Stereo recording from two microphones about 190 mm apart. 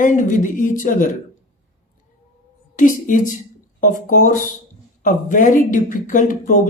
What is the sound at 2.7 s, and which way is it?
Speech, 45° left (ahead or behind).